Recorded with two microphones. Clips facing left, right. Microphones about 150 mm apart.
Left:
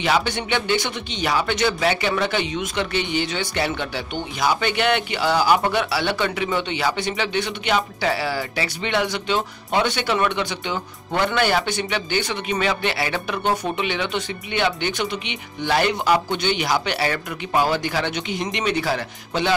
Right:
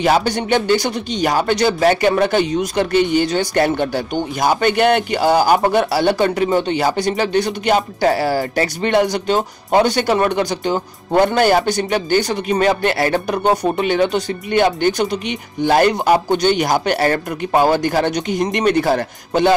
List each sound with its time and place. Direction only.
0.0 s speech: 40° right (ahead or behind)